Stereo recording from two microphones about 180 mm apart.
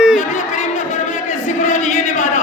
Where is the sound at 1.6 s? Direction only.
40° left (ahead or behind).